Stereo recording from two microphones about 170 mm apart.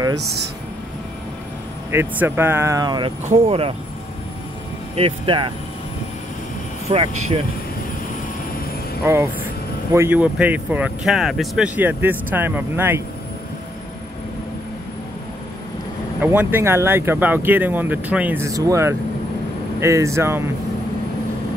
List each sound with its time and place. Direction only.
1.9 s speech: 15° right (ahead or behind)
3.3 s speech: 35° right (ahead or behind)
4.9 s speech: 30° right (ahead or behind)
6.9 s speech: 35° right (ahead or behind)
9.0 s speech: 15° right (ahead or behind)
16.2 s speech: 10° right (ahead or behind)